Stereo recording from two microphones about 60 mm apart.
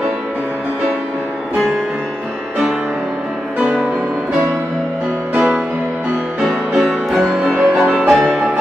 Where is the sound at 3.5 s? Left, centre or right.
Right.